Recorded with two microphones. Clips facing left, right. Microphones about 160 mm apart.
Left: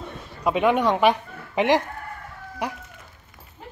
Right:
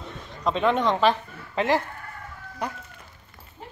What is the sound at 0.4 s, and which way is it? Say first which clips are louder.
A woman's voice: left 2 dB; 10° left (ahead or behind).